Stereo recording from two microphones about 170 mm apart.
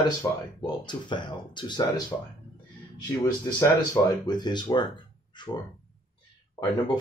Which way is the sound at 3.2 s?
20° left (ahead or behind).